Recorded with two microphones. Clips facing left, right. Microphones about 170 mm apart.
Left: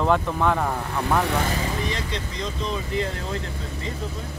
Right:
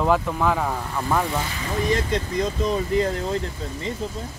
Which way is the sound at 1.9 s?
45° right (ahead or behind).